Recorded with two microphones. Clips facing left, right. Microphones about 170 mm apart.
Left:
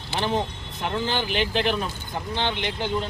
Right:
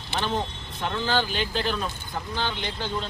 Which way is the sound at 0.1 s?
15° left (ahead or behind).